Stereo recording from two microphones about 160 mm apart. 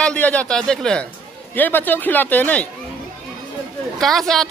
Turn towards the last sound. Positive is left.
turn(degrees=5)  # may be behind; listen again after turning